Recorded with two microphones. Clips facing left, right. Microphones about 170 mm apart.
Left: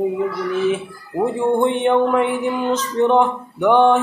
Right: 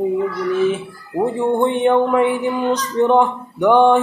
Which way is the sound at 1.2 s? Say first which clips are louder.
Even; centre (ahead or behind).